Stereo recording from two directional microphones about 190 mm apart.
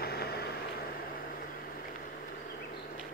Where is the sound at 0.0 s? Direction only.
55° left (ahead or behind).